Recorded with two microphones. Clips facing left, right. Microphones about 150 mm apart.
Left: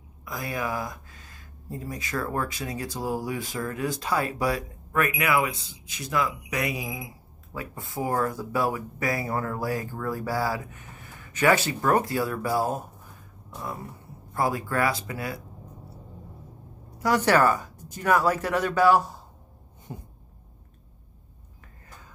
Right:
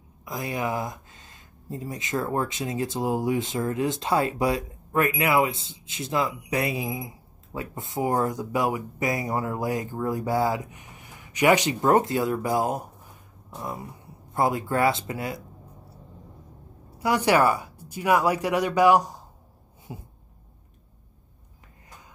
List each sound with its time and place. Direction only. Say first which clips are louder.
0.2 s speech: right 2 dB; 20° right (ahead or behind)
14.3 s speech: right 2 dB; 25° right (ahead or behind)
17.0 s speech: even; 10° right (ahead or behind)